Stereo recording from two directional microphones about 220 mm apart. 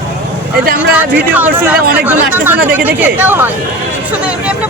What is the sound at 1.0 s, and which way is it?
Speech, 10° right (ahead or behind).